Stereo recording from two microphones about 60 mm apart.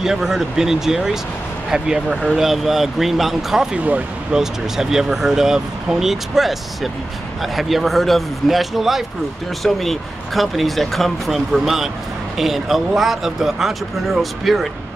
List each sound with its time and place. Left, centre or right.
0.0 s speech: centre
3.7 s speech: right
4.3 s speech: centre